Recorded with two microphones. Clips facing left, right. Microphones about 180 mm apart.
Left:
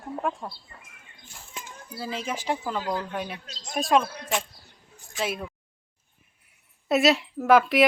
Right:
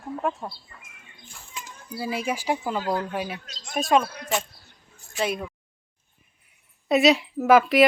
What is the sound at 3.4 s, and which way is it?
Speech, 30° left (ahead or behind).